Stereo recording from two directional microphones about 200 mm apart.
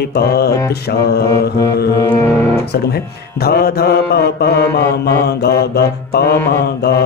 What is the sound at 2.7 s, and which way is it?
Speech, 50° left (ahead or behind).